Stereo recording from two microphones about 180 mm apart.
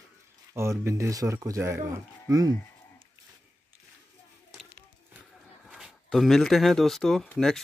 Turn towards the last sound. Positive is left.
turn(degrees=5)  # may be behind; listen again after turning